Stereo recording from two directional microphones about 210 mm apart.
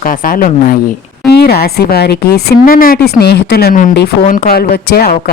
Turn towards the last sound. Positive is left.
turn(degrees=45)  # may be behind; listen again after turning